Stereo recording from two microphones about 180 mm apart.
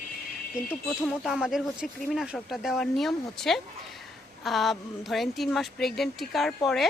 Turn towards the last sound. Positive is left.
turn(degrees=0)  # may be behind; listen again after turning